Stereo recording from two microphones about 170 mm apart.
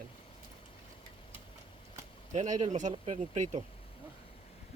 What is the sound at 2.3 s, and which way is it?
A man's voice, 45° right (ahead or behind).